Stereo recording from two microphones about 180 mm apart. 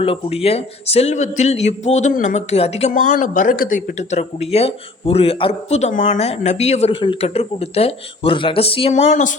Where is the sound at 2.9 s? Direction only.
45° left (ahead or behind).